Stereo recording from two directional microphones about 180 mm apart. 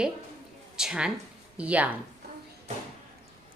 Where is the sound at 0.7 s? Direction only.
5° right (ahead or behind).